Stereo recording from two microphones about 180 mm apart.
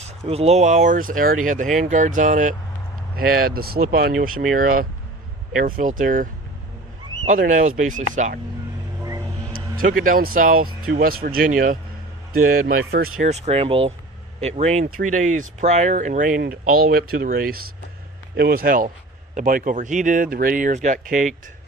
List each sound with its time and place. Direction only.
0.0 s speech: 35° right (ahead or behind)
3.2 s speech: 55° right (ahead or behind)
7.3 s speech: 45° right (ahead or behind)
9.7 s speech: 50° right (ahead or behind)
13.2 s speech: 35° right (ahead or behind)